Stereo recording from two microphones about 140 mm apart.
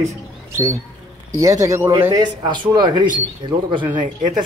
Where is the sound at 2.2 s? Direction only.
30° right (ahead or behind).